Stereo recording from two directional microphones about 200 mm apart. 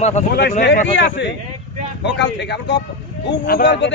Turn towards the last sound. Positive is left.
turn(degrees=60)  # may be behind; listen again after turning